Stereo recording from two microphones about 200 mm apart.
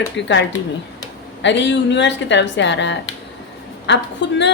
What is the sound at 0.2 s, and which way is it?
A woman's voice, 65° left (ahead or behind).